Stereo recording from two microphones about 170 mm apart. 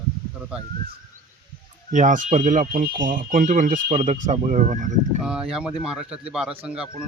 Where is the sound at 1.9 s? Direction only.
50° right (ahead or behind).